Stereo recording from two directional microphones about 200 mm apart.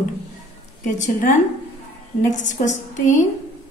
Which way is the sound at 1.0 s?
40° left (ahead or behind).